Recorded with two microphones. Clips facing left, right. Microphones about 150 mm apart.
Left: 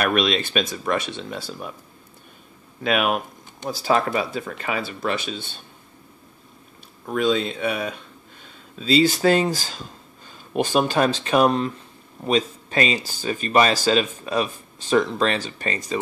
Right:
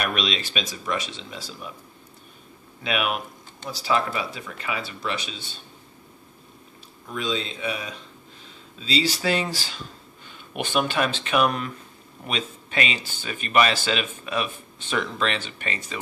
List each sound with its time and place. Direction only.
0.0 s speech: 55° left (ahead or behind)
2.8 s speech: 45° left (ahead or behind)
7.1 s speech: 55° left (ahead or behind); by 16.0 s 40° left (ahead or behind)